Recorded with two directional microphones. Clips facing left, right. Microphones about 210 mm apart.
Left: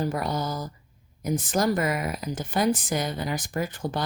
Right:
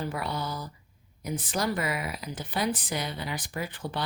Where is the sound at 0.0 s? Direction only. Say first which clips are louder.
Left 5 dB; 45° left (ahead or behind).